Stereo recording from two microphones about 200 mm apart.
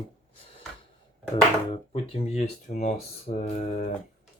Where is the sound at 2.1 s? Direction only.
30° left (ahead or behind).